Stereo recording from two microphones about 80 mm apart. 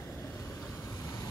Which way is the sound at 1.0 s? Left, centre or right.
Left.